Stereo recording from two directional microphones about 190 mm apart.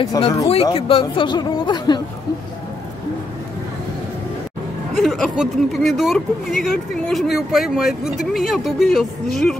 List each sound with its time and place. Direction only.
0.0 s speech: 20° left (ahead or behind)
4.9 s speech: centre (ahead or behind)